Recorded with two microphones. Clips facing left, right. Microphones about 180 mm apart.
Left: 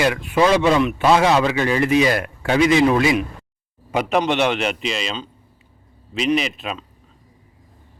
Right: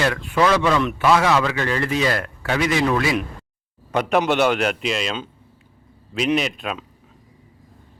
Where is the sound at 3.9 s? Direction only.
5° left (ahead or behind).